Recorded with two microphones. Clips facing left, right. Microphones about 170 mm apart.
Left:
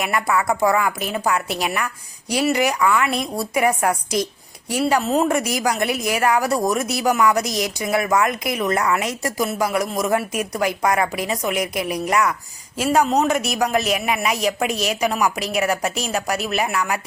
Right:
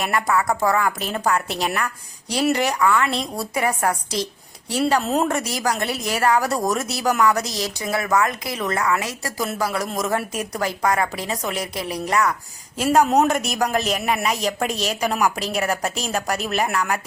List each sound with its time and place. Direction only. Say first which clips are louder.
0.0 s speech: even; 10° left (ahead or behind)
5.3 s speech: left 3 dB; 10° left (ahead or behind)
12.7 s speech: right 1 dB; centre (ahead or behind)
14.7 s a woman's voice: left 2 dB; 35° right (ahead or behind)
15.0 s speech: even; centre (ahead or behind)